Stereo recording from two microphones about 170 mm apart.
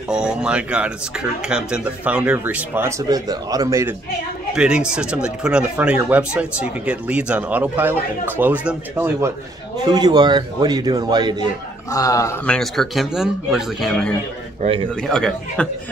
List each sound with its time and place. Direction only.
0.1 s speech: 5° right (ahead or behind)
4.6 s speech: 5° right (ahead or behind)
9.8 s a man's voice: 25° right (ahead or behind)
11.9 s a man's voice: 20° left (ahead or behind)
12.4 s speech: centre (ahead or behind)